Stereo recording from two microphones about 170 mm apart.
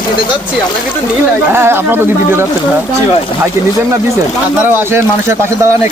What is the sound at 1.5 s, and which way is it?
Speech, 15° right (ahead or behind).